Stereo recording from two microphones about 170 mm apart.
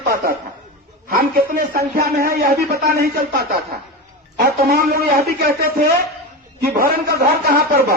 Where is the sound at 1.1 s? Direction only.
60° right (ahead or behind).